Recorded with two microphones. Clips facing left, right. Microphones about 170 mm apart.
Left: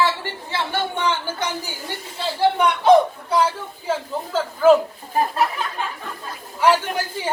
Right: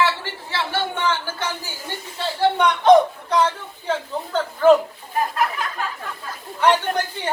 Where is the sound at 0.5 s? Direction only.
15° left (ahead or behind).